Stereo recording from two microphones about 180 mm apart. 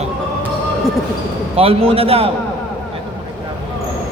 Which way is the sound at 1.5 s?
30° right (ahead or behind).